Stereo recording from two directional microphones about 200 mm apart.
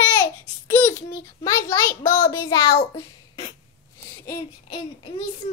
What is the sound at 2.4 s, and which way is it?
A child's voice, 20° left (ahead or behind).